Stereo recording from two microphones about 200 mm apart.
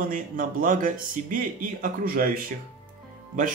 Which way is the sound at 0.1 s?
45° right (ahead or behind).